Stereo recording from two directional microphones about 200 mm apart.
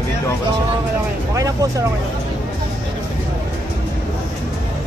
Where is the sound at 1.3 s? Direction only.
15° right (ahead or behind).